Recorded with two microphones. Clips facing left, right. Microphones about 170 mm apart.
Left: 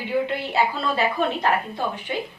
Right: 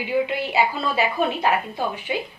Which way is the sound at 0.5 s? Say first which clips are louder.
Right 1 dB; 5° right (ahead or behind).